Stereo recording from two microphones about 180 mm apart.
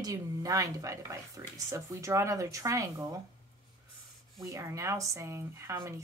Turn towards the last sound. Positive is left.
turn(degrees=-15)  # may be behind; listen again after turning